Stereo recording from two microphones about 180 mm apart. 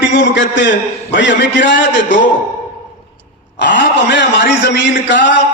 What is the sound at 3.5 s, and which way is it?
A man's voice, 75° left (ahead or behind).